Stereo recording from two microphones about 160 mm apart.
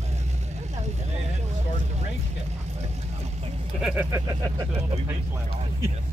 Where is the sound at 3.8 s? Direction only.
10° right (ahead or behind).